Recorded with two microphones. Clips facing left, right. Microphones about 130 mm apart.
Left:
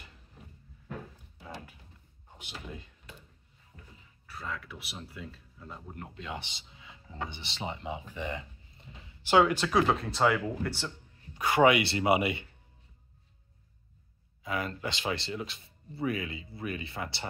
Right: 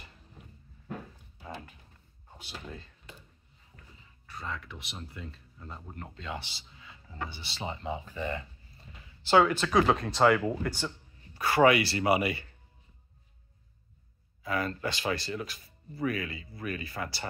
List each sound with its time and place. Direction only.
2.3 s speech: 15° left (ahead or behind)
4.3 s speech: 5° left (ahead or behind)
11.3 s speech: 20° left (ahead or behind)
14.4 s speech: 15° left (ahead or behind)